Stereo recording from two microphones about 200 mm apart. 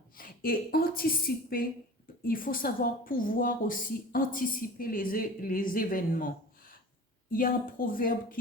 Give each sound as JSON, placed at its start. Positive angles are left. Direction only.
{"t": 0.2, "sound": "a woman's voice", "side_deg": 45}
{"t": 7.3, "sound": "a woman's voice", "side_deg": 45}